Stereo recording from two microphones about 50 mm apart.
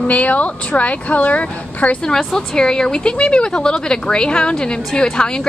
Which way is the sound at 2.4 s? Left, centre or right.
Centre.